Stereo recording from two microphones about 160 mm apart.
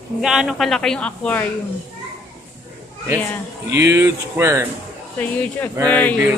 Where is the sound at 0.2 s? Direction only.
5° right (ahead or behind).